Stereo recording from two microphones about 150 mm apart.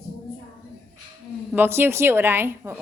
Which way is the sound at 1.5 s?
15° right (ahead or behind).